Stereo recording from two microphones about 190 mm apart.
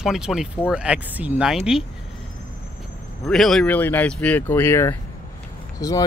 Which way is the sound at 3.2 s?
Centre (ahead or behind).